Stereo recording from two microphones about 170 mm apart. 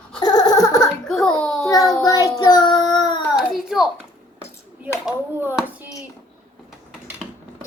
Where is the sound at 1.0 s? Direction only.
5° left (ahead or behind).